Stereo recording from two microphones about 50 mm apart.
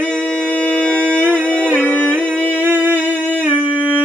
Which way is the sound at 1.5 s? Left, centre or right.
Left.